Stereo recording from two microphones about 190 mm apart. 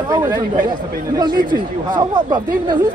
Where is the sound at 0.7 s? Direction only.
20° right (ahead or behind).